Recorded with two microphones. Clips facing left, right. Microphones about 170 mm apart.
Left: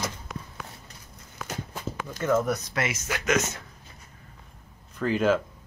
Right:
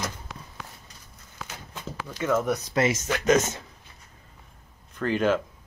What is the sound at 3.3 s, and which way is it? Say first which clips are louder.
Speech: right 5 dB; 30° right (ahead or behind).